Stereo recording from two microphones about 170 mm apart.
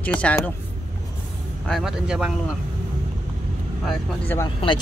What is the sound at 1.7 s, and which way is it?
Speech, centre (ahead or behind).